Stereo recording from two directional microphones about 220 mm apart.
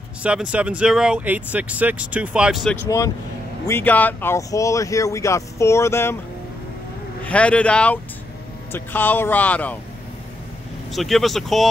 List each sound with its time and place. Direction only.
0.2 s speech: 5° right (ahead or behind); by 6.1 s 10° left (ahead or behind)
7.2 s speech: 5° left (ahead or behind)
10.9 s speech: centre (ahead or behind)